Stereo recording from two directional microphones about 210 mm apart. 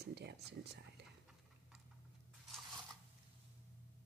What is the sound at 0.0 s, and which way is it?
Speech, 55° right (ahead or behind).